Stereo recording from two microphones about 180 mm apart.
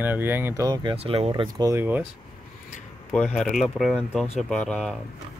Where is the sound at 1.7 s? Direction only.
10° right (ahead or behind).